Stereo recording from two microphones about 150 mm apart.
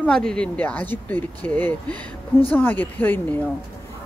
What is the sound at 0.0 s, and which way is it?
Speech, 5° left (ahead or behind).